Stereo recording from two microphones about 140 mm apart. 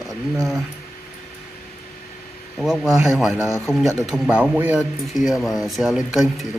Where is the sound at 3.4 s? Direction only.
20° left (ahead or behind).